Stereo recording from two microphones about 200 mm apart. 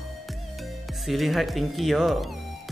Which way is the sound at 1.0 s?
Centre (ahead or behind).